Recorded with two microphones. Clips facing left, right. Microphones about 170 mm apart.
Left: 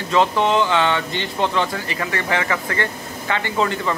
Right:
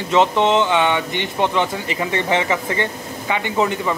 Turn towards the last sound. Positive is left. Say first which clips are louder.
# right 2 dB
turn(degrees=-15)  # may be behind; listen again after turning